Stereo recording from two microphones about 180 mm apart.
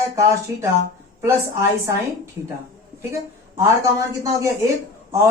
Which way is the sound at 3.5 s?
15° right (ahead or behind).